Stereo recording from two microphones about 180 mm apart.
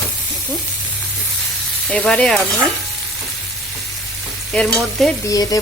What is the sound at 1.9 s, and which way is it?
Speech, 5° left (ahead or behind).